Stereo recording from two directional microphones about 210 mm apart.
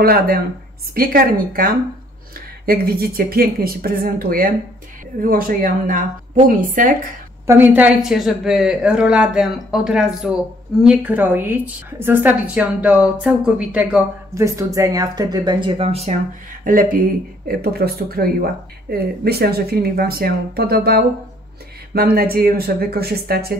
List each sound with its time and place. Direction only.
0.0 s speech: 45° right (ahead or behind)
7.4 s a woman's voice: 10° right (ahead or behind); by 16.2 s 30° right (ahead or behind)
16.6 s speech: 40° right (ahead or behind)